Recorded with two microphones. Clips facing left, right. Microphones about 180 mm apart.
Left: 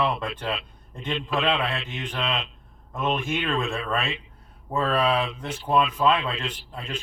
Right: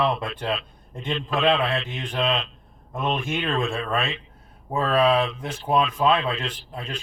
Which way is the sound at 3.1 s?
25° right (ahead or behind).